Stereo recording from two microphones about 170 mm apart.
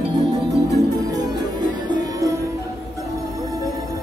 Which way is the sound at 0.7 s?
20° right (ahead or behind).